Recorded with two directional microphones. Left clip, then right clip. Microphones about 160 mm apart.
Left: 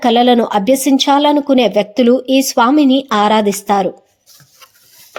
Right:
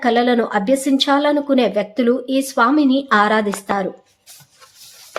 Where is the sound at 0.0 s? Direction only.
30° left (ahead or behind).